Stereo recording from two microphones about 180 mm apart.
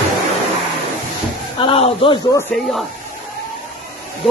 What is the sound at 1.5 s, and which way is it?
Speech, 30° left (ahead or behind).